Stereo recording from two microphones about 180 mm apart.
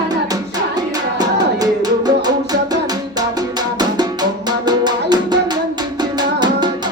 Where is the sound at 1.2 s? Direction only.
20° right (ahead or behind).